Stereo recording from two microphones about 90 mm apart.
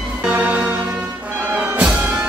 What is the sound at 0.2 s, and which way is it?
Music, 15° right (ahead or behind).